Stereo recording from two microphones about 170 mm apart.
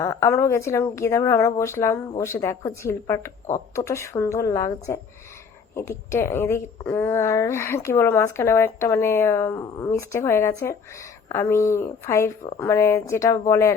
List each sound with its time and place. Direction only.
0.0 s a woman's voice: 20° left (ahead or behind)